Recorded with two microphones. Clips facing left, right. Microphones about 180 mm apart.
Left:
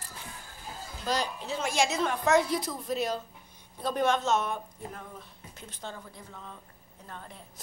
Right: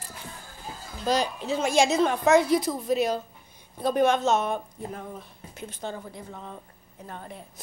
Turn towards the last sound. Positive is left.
turn(degrees=-20)  # may be behind; listen again after turning